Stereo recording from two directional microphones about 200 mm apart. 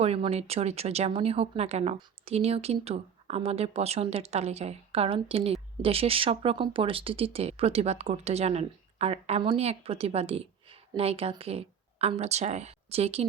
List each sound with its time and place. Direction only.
0.0 s a woman's voice: 30° right (ahead or behind)